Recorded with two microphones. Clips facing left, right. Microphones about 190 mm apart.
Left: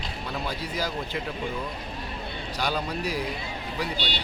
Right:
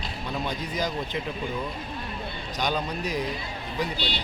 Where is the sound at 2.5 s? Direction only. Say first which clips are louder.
Right 1 dB; 10° left (ahead or behind).